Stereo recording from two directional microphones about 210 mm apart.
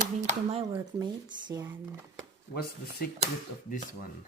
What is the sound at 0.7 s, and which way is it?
Speech, 20° right (ahead or behind).